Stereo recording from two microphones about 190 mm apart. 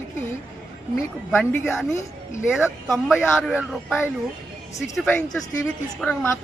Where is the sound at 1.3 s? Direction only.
5° left (ahead or behind).